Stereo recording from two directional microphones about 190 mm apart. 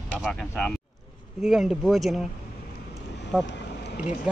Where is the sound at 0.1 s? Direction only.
Centre (ahead or behind).